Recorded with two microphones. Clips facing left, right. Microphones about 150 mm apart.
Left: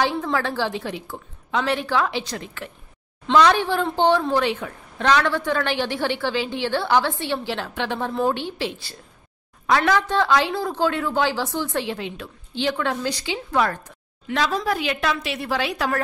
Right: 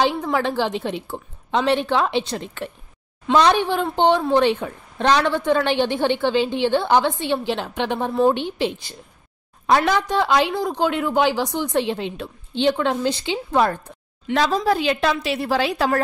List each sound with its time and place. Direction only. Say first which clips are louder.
0.0 s a woman's voice: right 2 dB; 20° right (ahead or behind)